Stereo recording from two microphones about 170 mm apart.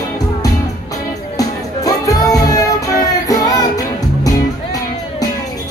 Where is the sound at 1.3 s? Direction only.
20° left (ahead or behind).